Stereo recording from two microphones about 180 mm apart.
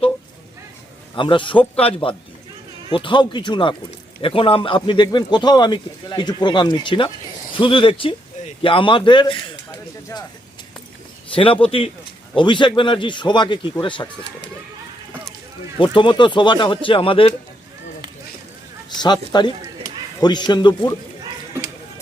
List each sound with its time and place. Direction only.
1.1 s speech: 25° left (ahead or behind)
11.3 s speech: 30° left (ahead or behind)
15.8 s speech: 30° left (ahead or behind)
18.9 s speech: 25° left (ahead or behind)